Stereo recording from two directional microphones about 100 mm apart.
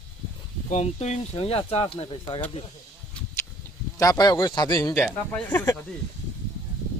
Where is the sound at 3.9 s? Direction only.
35° left (ahead or behind).